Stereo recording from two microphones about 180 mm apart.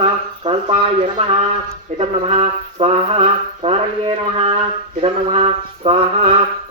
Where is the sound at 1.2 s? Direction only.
30° right (ahead or behind).